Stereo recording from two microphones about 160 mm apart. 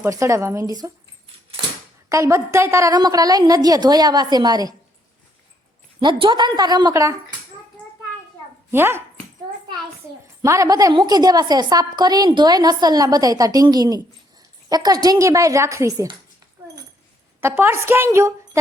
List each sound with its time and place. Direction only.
0.0 s a woman's voice: 20° right (ahead or behind)
2.0 s a woman's voice: 20° right (ahead or behind)
6.0 s a woman's voice: 30° right (ahead or behind)
8.7 s a woman's voice: 15° right (ahead or behind)
10.4 s a woman's voice: 20° right (ahead or behind)
17.4 s a woman's voice: 15° right (ahead or behind)